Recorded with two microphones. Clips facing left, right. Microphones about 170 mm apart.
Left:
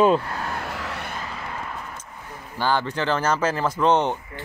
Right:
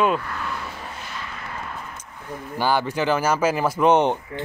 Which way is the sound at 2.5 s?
10° right (ahead or behind).